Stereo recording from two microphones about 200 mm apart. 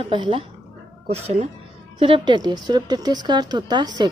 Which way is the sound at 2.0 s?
25° right (ahead or behind).